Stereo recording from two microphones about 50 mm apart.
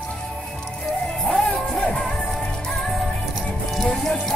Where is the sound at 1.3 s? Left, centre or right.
Centre.